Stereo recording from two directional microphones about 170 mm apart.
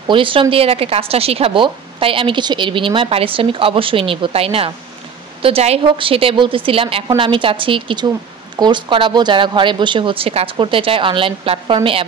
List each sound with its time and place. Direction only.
0.1 s a woman's voice: 30° right (ahead or behind)